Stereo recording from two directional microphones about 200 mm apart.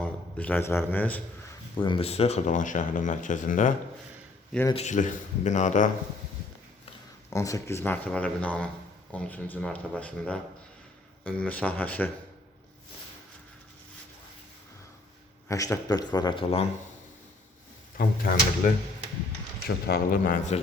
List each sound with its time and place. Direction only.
0.0 s a man's voice: 5° left (ahead or behind)
1.7 s speech: 25° left (ahead or behind)
4.7 s speech: 35° left (ahead or behind)
7.3 s speech: 15° left (ahead or behind)
15.4 s a man's voice: 15° left (ahead or behind)
17.9 s speech: 45° left (ahead or behind)